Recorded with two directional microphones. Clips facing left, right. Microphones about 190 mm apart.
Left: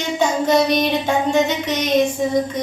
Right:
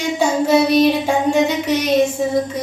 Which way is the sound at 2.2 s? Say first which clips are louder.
Right 1 dB; 5° right (ahead or behind).